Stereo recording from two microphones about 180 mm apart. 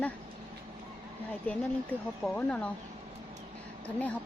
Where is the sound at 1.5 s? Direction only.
10° left (ahead or behind).